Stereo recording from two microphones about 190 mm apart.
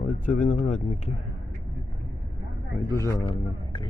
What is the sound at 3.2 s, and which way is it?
Speech, 25° left (ahead or behind).